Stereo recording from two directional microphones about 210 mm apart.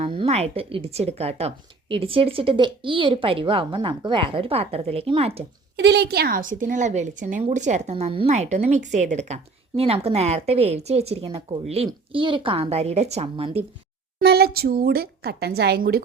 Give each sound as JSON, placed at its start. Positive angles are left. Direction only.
{"t": 0.0, "sound": "speech", "side_deg": -30}
{"t": 5.7, "sound": "a woman's voice", "side_deg": -55}
{"t": 14.2, "sound": "a woman's voice", "side_deg": -50}